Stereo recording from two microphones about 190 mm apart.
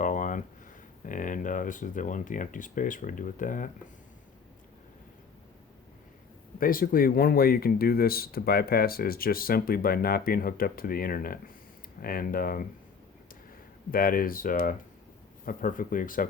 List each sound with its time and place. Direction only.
0.0 s a sound: 45° left (ahead or behind)
1.0 s speech: 45° left (ahead or behind)
6.6 s speech: 50° left (ahead or behind)
13.9 s speech: 50° left (ahead or behind)